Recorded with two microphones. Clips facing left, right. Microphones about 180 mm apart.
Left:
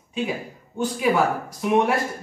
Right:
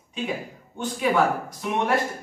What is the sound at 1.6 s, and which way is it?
Speech, 5° left (ahead or behind).